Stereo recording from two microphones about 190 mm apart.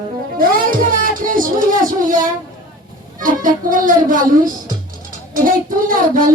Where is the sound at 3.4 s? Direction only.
45° right (ahead or behind).